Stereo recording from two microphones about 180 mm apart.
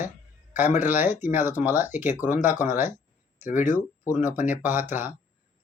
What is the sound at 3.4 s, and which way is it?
Speech, 45° left (ahead or behind).